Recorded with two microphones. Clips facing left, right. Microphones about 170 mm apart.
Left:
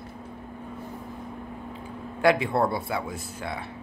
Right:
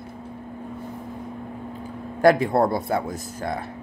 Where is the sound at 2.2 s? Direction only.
45° right (ahead or behind).